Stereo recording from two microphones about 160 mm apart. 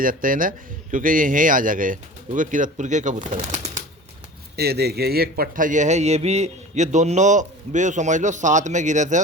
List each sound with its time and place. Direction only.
0.0 s a man's voice: 60° right (ahead or behind)
4.5 s a man's voice: 90° right; by 9.2 s 50° right (ahead or behind)